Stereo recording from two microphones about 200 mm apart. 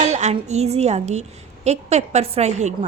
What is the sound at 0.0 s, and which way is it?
A woman's voice, 35° right (ahead or behind).